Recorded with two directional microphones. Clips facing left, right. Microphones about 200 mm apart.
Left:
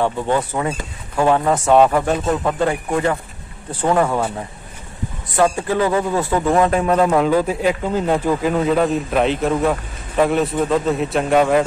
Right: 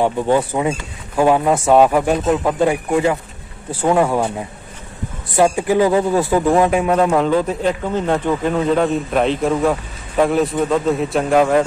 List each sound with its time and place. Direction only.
0.0 s a man's voice: 15° right (ahead or behind)